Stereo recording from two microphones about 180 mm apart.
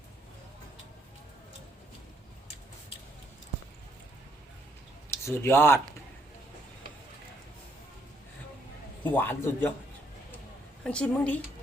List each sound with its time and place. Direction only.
5.1 s speech: 15° left (ahead or behind)
9.1 s a man's voice: 10° left (ahead or behind)
10.8 s a man's voice: 5° left (ahead or behind)